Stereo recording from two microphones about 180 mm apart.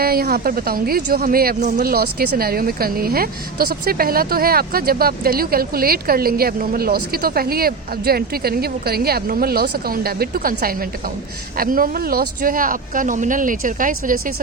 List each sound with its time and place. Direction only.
0.0 s speech: 60° right (ahead or behind)